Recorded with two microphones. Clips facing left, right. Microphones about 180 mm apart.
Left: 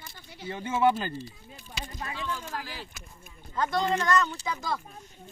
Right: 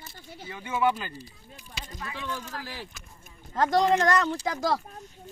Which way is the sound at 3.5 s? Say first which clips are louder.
Right 5 dB; 90° right.